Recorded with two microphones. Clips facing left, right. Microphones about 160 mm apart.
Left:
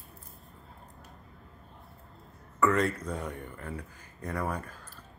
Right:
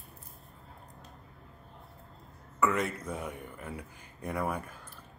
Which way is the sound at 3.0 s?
5° right (ahead or behind).